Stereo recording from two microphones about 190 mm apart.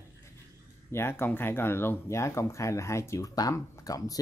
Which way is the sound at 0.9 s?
10° left (ahead or behind).